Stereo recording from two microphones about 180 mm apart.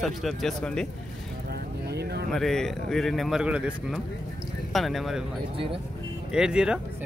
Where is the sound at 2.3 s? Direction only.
Centre (ahead or behind).